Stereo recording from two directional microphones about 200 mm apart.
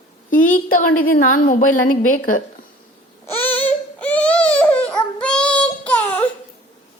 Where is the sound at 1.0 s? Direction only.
45° left (ahead or behind).